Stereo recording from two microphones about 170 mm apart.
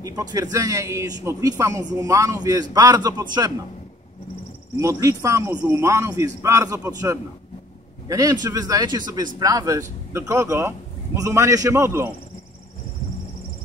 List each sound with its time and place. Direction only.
0.0 s speech: 20° right (ahead or behind)
4.7 s a man's voice: 20° right (ahead or behind)